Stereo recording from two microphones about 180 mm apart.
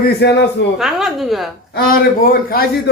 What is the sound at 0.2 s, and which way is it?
Speech, 70° left (ahead or behind).